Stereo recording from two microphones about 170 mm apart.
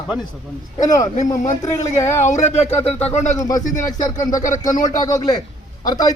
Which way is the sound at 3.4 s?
20° left (ahead or behind).